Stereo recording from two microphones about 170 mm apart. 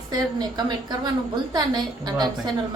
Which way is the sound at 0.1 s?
25° right (ahead or behind).